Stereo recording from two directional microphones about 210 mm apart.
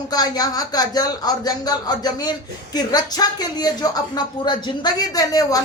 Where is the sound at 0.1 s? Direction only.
20° left (ahead or behind).